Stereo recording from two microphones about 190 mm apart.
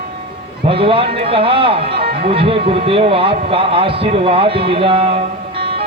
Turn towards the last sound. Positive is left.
turn(degrees=-30)  # may be behind; listen again after turning